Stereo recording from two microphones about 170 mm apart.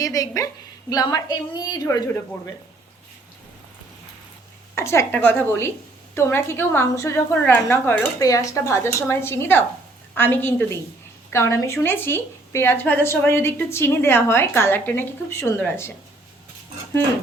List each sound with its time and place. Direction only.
0.0 s a woman's voice: 20° left (ahead or behind)
4.7 s speech: 15° left (ahead or behind)